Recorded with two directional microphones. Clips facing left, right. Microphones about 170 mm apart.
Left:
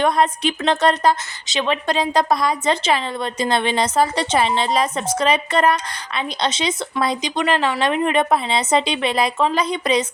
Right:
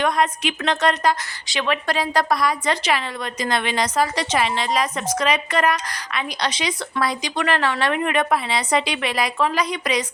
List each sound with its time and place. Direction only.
0.0 s a woman's voice: 30° left (ahead or behind)